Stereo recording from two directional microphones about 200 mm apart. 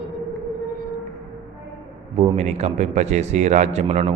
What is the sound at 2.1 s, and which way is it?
Speech, 30° right (ahead or behind).